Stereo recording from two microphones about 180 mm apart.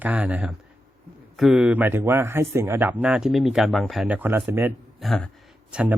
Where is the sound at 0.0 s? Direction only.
5° right (ahead or behind).